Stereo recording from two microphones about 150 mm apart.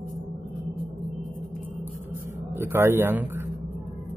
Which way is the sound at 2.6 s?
15° right (ahead or behind).